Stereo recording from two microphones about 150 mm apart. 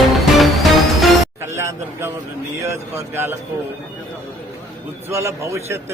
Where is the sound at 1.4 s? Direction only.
15° right (ahead or behind).